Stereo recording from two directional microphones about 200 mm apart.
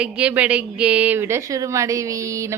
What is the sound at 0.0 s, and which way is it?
A woman's voice, 5° right (ahead or behind).